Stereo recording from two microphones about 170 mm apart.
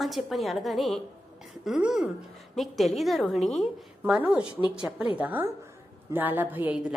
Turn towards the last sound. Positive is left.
turn(degrees=-5)  # may be behind; listen again after turning